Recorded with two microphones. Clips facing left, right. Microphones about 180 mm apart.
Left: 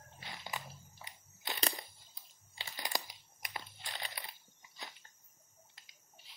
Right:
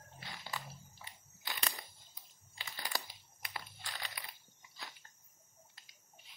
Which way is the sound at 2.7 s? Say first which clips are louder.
Left 2 dB; 15° left (ahead or behind).